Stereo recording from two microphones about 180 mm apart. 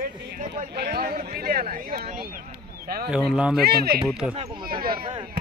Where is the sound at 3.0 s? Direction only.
5° right (ahead or behind).